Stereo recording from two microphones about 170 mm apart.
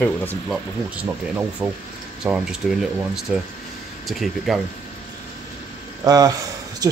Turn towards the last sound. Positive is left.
turn(degrees=-20)  # may be behind; listen again after turning